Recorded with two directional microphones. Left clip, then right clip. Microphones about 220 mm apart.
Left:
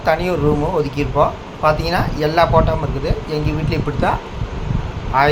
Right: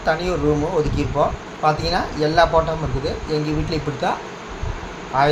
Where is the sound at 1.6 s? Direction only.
15° left (ahead or behind).